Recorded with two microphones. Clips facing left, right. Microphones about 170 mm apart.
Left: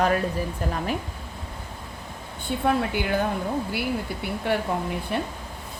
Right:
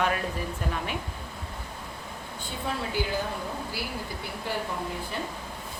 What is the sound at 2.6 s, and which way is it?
Speech, 60° left (ahead or behind).